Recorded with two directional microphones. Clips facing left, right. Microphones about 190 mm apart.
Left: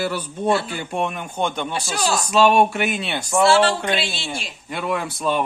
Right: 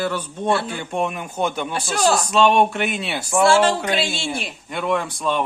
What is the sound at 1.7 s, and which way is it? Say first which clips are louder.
Speech: right 2 dB; 55° right (ahead or behind).